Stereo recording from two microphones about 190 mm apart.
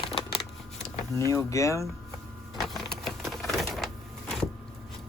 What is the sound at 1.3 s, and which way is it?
Speech, 15° left (ahead or behind).